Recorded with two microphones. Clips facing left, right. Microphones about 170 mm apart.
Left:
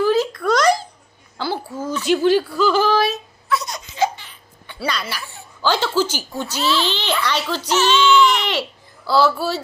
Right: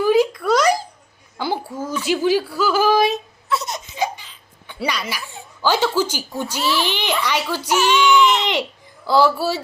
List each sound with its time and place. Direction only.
0.0 s a sound: 10° right (ahead or behind)
2.2 s a woman's voice: 10° right (ahead or behind)
3.5 s laughter: 25° right (ahead or behind)
4.7 s a woman's voice: 10° right (ahead or behind)